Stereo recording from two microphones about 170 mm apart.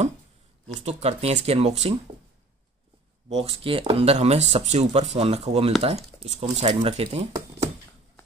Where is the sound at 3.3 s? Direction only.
35° right (ahead or behind).